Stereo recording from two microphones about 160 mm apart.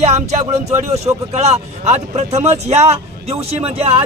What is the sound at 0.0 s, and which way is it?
A man's voice, 45° right (ahead or behind).